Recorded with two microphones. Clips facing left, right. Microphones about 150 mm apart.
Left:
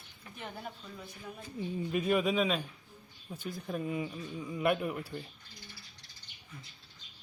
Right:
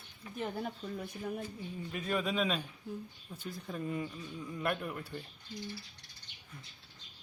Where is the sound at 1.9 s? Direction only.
15° left (ahead or behind).